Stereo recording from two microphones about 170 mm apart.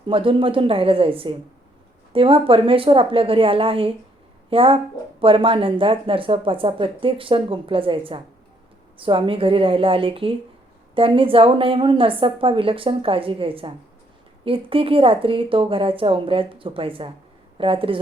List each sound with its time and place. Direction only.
0.1 s speech: 30° right (ahead or behind)